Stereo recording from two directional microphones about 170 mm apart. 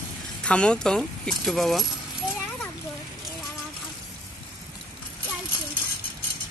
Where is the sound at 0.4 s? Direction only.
5° left (ahead or behind).